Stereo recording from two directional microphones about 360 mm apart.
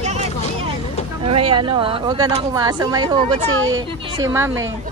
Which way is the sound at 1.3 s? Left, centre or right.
Centre.